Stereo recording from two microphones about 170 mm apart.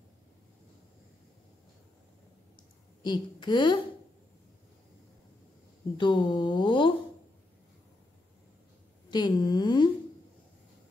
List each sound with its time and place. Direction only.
3.0 s speech: 25° left (ahead or behind)
5.9 s speech: 25° left (ahead or behind)
9.1 s speech: 25° left (ahead or behind)